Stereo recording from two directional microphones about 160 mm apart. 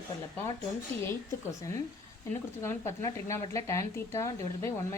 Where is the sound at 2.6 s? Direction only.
15° left (ahead or behind).